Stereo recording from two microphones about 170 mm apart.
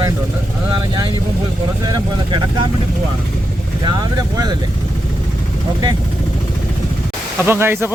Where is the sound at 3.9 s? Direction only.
25° right (ahead or behind).